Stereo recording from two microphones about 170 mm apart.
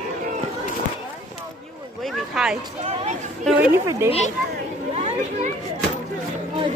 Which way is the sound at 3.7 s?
15° right (ahead or behind).